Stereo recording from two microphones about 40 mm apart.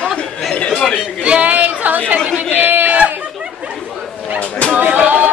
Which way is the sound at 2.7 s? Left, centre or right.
Right.